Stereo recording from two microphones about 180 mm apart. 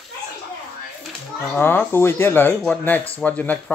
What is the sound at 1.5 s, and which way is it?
Speech, 10° left (ahead or behind).